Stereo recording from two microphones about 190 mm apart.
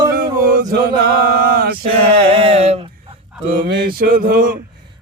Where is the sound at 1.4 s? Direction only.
55° right (ahead or behind).